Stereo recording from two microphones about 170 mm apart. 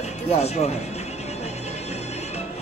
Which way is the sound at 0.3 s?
40° left (ahead or behind).